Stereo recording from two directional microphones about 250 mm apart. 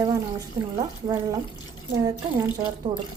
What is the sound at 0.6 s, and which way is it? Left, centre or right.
Speech, centre.